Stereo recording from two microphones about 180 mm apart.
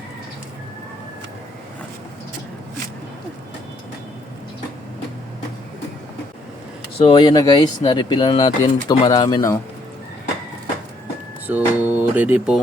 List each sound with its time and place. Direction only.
7.0 s speech: 25° left (ahead or behind)
11.4 s speech: 10° right (ahead or behind)